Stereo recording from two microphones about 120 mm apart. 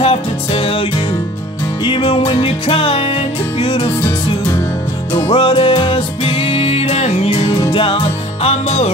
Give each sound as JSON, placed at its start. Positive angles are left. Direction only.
{"t": 0.0, "sound": "music", "side_deg": 55}
{"t": 1.9, "sound": "music", "side_deg": 45}
{"t": 5.1, "sound": "music", "side_deg": 45}
{"t": 7.3, "sound": "music", "side_deg": 35}
{"t": 8.4, "sound": "music", "side_deg": 55}